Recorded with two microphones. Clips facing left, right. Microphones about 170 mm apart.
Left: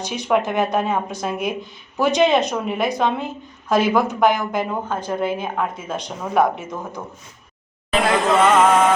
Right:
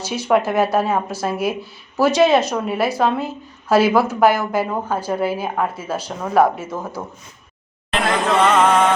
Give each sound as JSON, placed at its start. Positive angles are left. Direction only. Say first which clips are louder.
{"t": 0.0, "sound": "a woman's voice", "louder": "right 2 dB", "side_deg": 0}
{"t": 8.5, "sound": "a woman's voice", "louder": "even", "side_deg": 5}